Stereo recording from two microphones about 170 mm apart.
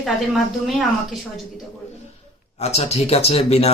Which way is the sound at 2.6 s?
40° left (ahead or behind).